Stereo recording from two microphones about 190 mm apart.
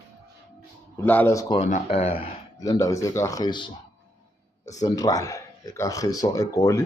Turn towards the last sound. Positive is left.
turn(degrees=15)  # may be behind; listen again after turning